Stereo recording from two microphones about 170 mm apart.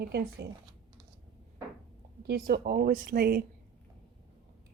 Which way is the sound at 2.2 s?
65° right (ahead or behind).